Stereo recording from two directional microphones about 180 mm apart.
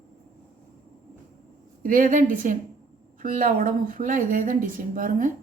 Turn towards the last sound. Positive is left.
turn(degrees=-45)  # may be behind; listen again after turning